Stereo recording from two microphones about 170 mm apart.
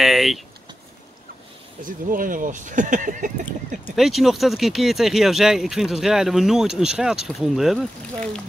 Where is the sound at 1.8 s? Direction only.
50° right (ahead or behind).